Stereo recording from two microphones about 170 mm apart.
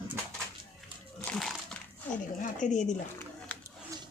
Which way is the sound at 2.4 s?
50° left (ahead or behind).